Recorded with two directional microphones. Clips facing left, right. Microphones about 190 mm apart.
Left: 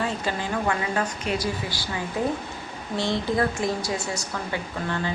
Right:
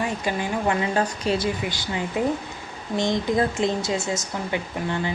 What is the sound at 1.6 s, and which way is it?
A woman's voice, 20° right (ahead or behind).